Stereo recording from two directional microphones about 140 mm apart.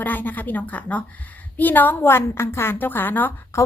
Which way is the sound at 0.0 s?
10° left (ahead or behind).